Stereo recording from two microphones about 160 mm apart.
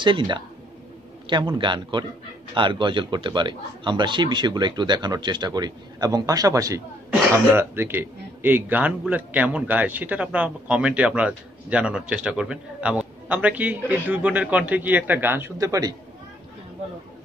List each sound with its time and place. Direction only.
0.0 s a man's voice: 30° right (ahead or behind)